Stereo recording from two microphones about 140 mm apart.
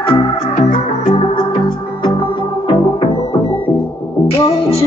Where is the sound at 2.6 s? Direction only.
35° left (ahead or behind).